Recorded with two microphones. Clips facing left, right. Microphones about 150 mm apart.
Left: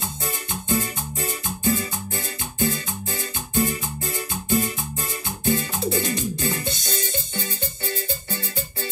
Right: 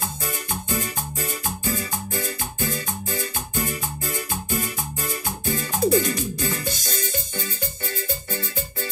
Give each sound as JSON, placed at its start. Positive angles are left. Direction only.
{"t": 0.7, "sound": "music", "side_deg": 25}